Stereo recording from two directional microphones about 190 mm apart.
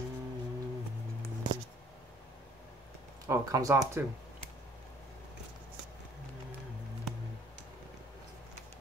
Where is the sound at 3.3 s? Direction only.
15° right (ahead or behind).